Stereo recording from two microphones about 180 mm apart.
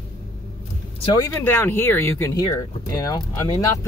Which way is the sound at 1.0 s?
20° left (ahead or behind).